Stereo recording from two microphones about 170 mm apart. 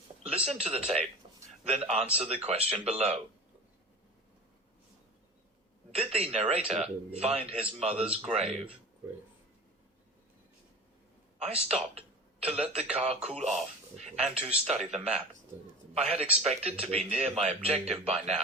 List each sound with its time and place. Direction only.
0.2 s a sound: 35° right (ahead or behind)
0.5 s speech: 35° right (ahead or behind)
1.2 s a sound: 35° right (ahead or behind)
1.6 s speech: 35° right (ahead or behind)
5.9 s speech: 35° right (ahead or behind)
11.3 s a man's voice: 35° right (ahead or behind)